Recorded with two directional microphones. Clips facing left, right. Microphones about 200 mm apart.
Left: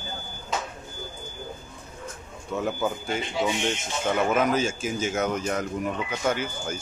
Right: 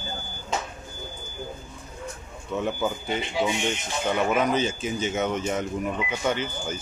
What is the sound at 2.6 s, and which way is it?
Speech, centre (ahead or behind).